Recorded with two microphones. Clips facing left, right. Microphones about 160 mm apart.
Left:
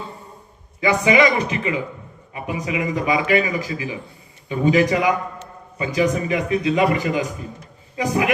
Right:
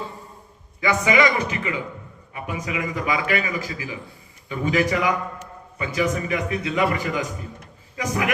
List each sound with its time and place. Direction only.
0.8 s a man's voice: 25° left (ahead or behind)